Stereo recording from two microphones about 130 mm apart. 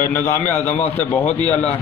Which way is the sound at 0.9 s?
15° left (ahead or behind).